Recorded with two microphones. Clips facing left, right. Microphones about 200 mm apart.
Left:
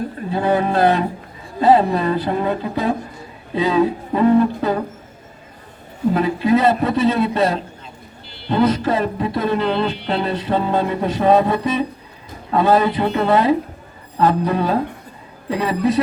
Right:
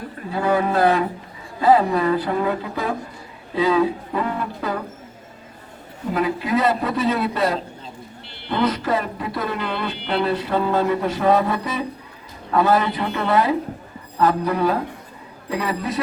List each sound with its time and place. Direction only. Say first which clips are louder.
0.3 s music: left 2 dB; 25° left (ahead or behind)
6.1 s music: left 3 dB; 25° left (ahead or behind)
8.6 s music: left 3 dB; 25° left (ahead or behind)